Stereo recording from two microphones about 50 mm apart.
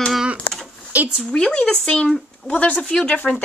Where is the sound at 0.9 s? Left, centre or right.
Right.